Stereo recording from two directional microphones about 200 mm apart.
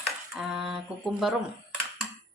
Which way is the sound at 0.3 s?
Centre (ahead or behind).